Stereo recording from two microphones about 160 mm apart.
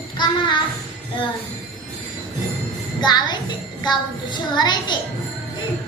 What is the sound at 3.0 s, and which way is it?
A child's voice, 25° left (ahead or behind).